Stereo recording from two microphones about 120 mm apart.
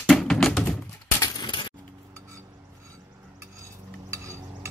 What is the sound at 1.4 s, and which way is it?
Keys jangling, 40° left (ahead or behind).